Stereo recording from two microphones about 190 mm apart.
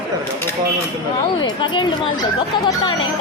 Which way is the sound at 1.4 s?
25° left (ahead or behind).